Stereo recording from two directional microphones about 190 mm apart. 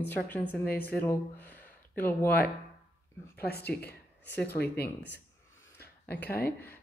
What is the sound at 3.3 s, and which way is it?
Speech, 55° left (ahead or behind).